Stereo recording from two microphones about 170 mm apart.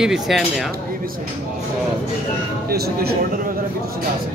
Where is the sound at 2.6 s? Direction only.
65° right (ahead or behind).